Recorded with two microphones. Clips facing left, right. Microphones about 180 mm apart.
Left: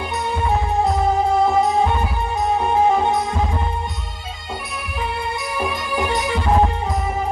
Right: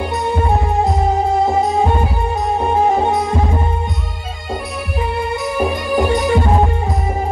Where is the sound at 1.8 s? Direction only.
45° right (ahead or behind).